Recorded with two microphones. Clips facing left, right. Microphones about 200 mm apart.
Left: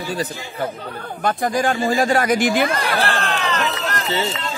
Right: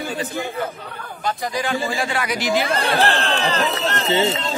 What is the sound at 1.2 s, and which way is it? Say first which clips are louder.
Speech: left 5 dB; 50° left (ahead or behind).